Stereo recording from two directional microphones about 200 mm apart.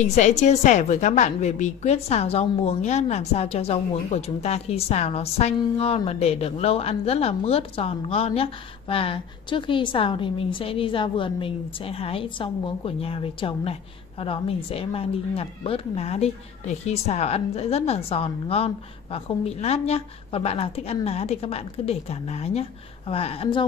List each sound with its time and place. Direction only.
0.0 s a woman's voice: 35° left (ahead or behind)